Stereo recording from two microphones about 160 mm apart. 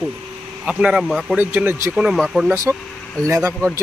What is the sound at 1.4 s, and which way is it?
Speech, 10° right (ahead or behind).